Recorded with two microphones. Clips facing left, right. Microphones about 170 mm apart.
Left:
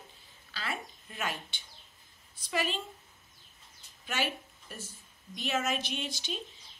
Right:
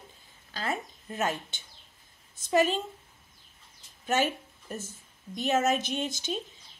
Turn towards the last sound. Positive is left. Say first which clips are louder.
# right 6 dB
turn(degrees=-45)  # may be behind; listen again after turning